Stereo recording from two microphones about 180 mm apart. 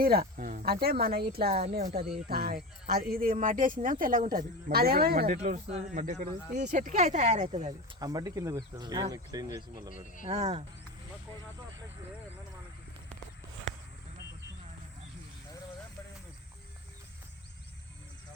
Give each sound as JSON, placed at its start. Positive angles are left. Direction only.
{"t": 0.0, "sound": "speech", "side_deg": -55}
{"t": 5.4, "sound": "speech", "side_deg": -45}
{"t": 7.9, "sound": "speech", "side_deg": -20}
{"t": 10.2, "sound": "speech", "side_deg": -35}
{"t": 13.7, "sound": "a sound", "side_deg": -90}